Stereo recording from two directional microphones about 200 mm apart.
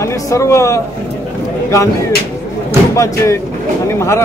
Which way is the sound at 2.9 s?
15° left (ahead or behind).